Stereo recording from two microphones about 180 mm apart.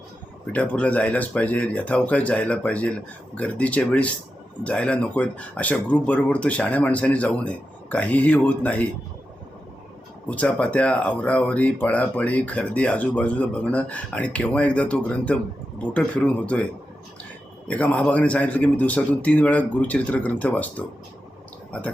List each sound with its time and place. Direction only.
0.5 s speech: 5° left (ahead or behind)
10.2 s speech: 5° left (ahead or behind)
17.7 s speech: 5° left (ahead or behind)